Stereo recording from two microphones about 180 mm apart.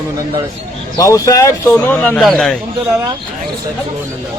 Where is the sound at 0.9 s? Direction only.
20° left (ahead or behind); by 2.6 s centre (ahead or behind).